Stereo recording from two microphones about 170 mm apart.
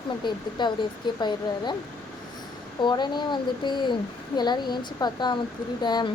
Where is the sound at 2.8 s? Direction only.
25° left (ahead or behind).